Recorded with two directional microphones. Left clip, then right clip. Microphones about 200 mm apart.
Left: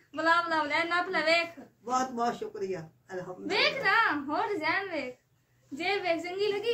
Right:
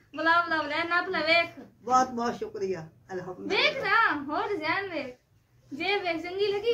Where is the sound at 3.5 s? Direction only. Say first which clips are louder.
Right 1 dB; 15° left (ahead or behind).